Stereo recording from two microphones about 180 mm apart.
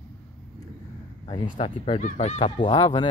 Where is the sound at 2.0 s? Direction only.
40° left (ahead or behind).